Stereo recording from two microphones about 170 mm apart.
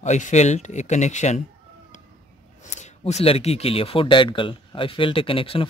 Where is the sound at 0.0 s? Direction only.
45° left (ahead or behind).